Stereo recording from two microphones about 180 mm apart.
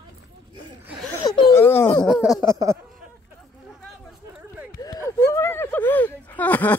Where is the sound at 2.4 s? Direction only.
15° right (ahead or behind).